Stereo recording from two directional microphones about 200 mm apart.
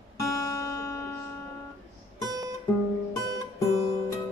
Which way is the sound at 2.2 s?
20° right (ahead or behind).